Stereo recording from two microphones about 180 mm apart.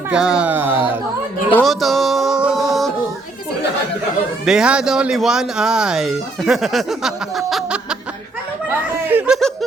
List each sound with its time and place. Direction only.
0.1 s speech: 5° right (ahead or behind)
1.5 s music: centre (ahead or behind)
4.4 s speech: 5° right (ahead or behind)
9.0 s snicker: 5° right (ahead or behind)